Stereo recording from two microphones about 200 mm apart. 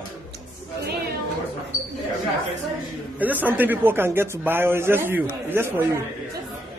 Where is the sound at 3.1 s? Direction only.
10° right (ahead or behind).